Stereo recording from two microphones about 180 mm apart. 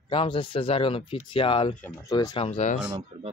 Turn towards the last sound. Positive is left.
turn(degrees=-35)  # may be behind; listen again after turning